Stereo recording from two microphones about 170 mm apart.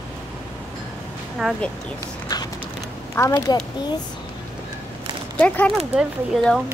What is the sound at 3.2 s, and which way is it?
Speech, 20° left (ahead or behind).